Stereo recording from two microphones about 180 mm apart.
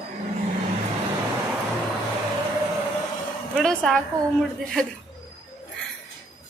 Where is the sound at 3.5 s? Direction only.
Centre (ahead or behind).